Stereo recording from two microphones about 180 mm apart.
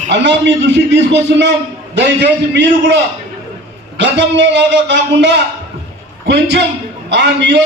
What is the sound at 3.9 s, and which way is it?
A man's voice, 85° right.